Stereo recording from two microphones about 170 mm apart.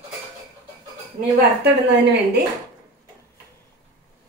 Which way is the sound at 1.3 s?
75° right (ahead or behind).